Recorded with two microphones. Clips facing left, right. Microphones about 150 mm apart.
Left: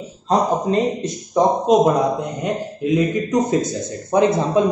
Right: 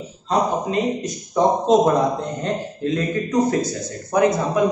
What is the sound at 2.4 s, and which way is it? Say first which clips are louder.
A man's voice: left 2 dB; 15° left (ahead or behind).